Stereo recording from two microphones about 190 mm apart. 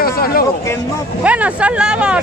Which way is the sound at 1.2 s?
5° right (ahead or behind).